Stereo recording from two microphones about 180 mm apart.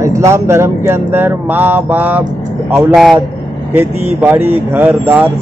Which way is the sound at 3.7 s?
10° right (ahead or behind).